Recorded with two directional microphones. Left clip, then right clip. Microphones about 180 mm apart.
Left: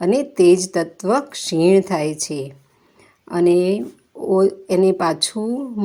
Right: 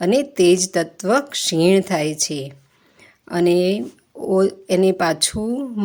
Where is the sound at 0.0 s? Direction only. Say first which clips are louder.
Left 1 dB; 25° right (ahead or behind).